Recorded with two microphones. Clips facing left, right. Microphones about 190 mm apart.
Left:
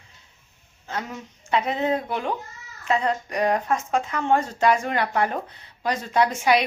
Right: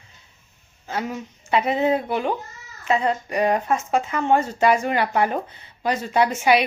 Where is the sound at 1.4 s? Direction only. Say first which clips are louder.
Right 3 dB; 10° right (ahead or behind).